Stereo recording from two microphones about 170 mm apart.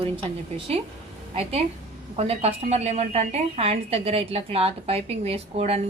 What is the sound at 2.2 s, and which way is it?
A woman's voice, 40° right (ahead or behind).